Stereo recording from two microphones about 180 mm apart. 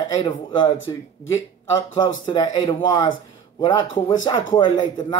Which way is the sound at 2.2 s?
20° left (ahead or behind).